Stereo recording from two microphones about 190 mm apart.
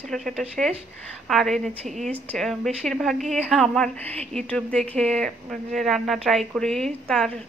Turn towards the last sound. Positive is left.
turn(degrees=0)  # may be behind; listen again after turning